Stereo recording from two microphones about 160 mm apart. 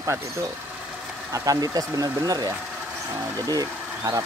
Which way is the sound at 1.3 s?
20° right (ahead or behind).